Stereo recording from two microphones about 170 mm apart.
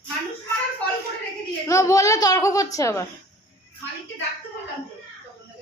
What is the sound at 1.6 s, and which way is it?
A child's voice, 20° left (ahead or behind).